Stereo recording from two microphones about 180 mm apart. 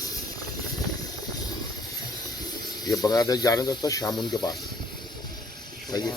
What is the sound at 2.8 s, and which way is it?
Speech, 20° left (ahead or behind).